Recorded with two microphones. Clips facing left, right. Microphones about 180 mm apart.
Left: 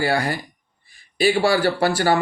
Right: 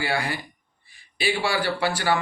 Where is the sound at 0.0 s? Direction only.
40° left (ahead or behind).